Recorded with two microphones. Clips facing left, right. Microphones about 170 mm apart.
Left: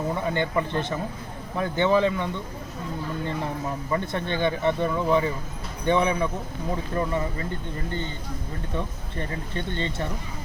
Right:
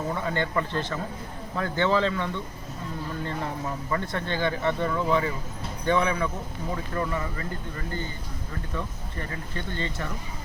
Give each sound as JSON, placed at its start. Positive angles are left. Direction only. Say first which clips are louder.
{"t": 0.1, "sound": "speech", "louder": "left 2 dB", "side_deg": 20}
{"t": 3.9, "sound": "speech", "louder": "left 2 dB", "side_deg": 20}